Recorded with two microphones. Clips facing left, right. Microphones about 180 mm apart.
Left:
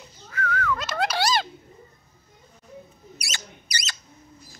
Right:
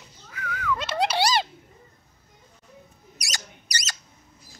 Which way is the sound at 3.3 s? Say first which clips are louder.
Right 2 dB; 40° right (ahead or behind).